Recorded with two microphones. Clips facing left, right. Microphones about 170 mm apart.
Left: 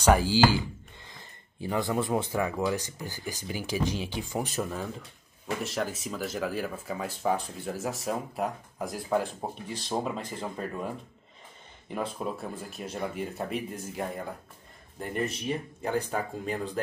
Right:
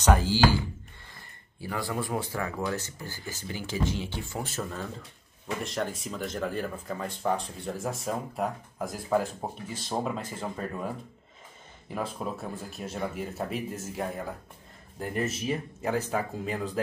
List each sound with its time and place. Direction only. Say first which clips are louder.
0.0 s a sound: left 1 dB; 10° left (ahead or behind)
1.6 s speech: left 4 dB; 20° left (ahead or behind)
5.6 s speech: right 1 dB; centre (ahead or behind)
11.9 s speech: left 1 dB; centre (ahead or behind)